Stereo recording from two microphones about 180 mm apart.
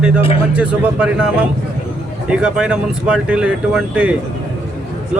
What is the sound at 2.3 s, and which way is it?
A man's voice, 5° right (ahead or behind).